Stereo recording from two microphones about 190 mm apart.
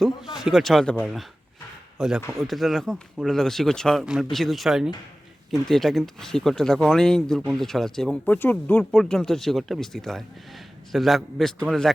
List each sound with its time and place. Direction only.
0.0 s speech: centre (ahead or behind)